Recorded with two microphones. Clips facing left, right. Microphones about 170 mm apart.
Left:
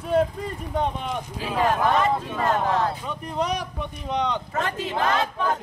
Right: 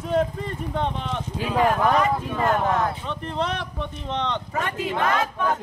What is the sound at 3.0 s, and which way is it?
Speech, 10° left (ahead or behind).